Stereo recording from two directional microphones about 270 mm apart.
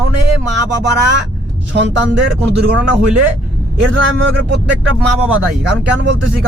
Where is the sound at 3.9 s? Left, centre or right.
Right.